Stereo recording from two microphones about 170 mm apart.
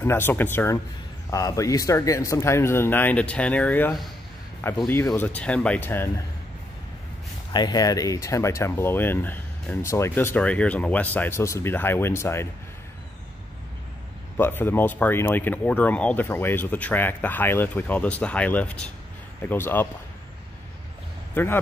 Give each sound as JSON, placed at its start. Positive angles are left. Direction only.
{"t": 0.0, "sound": "speech", "side_deg": 15}
{"t": 7.5, "sound": "speech", "side_deg": 25}
{"t": 14.3, "sound": "speech", "side_deg": 10}